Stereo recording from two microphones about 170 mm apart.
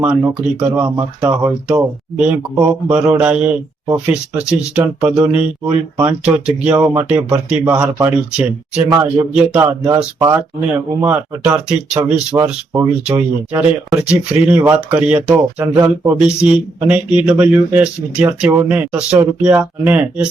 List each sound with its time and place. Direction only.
0.0 s speech: 10° right (ahead or behind)
11.0 s speech: 5° right (ahead or behind)